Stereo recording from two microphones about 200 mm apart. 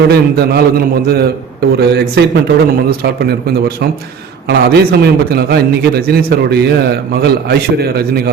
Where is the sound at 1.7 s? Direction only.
55° right (ahead or behind).